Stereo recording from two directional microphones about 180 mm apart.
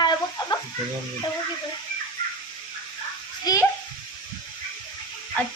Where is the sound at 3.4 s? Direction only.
20° left (ahead or behind).